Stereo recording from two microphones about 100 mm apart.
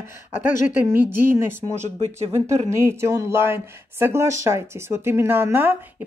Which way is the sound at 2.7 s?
25° right (ahead or behind).